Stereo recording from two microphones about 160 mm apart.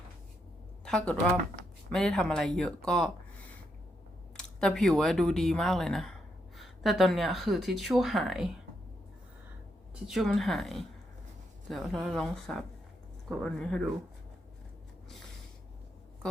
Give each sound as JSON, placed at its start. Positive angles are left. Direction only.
{"t": 0.9, "sound": "speech", "side_deg": 5}
{"t": 4.4, "sound": "speech", "side_deg": 5}
{"t": 9.9, "sound": "speech", "side_deg": 0}